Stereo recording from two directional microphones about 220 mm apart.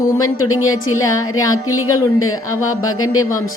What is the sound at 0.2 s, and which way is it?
A woman's voice, 75° left (ahead or behind).